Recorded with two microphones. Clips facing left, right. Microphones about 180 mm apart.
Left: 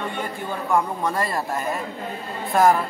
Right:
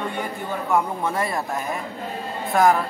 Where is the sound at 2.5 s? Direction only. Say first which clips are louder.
Even; centre (ahead or behind).